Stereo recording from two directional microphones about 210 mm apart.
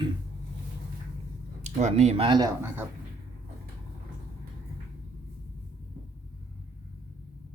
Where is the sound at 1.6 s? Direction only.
30° right (ahead or behind); by 2.8 s 15° right (ahead or behind).